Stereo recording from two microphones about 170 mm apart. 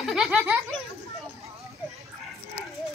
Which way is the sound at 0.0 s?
Centre (ahead or behind).